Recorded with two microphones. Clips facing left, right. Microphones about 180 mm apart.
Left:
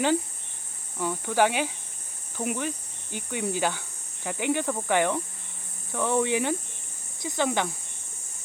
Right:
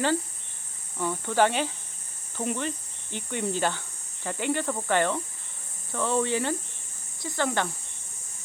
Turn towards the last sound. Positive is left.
turn(degrees=15)  # may be behind; listen again after turning